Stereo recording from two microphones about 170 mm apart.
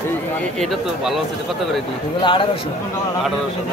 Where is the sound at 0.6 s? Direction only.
Centre (ahead or behind).